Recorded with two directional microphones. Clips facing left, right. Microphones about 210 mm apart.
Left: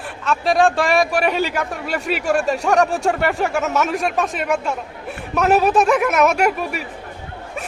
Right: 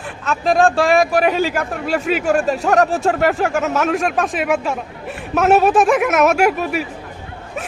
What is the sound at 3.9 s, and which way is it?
Speech, centre (ahead or behind).